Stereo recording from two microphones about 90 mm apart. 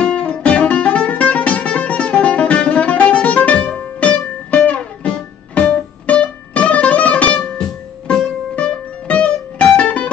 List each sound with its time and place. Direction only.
0.0 s music: 10° left (ahead or behind)